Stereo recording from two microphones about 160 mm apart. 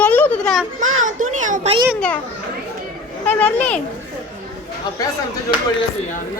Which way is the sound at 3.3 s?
10° left (ahead or behind).